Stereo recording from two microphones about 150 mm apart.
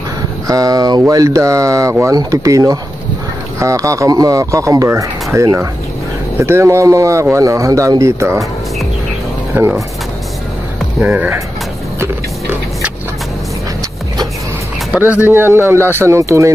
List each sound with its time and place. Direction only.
0.5 s speech: 25° right (ahead or behind)
11.1 s speech: 15° right (ahead or behind)
15.0 s speech: 10° right (ahead or behind)